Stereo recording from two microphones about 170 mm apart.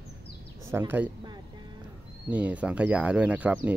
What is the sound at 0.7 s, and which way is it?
Speech, 15° right (ahead or behind).